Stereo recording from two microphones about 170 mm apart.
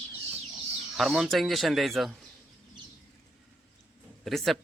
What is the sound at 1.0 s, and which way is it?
Speech, centre (ahead or behind).